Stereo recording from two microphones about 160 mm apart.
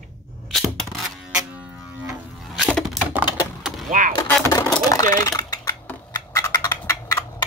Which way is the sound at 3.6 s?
Centre (ahead or behind).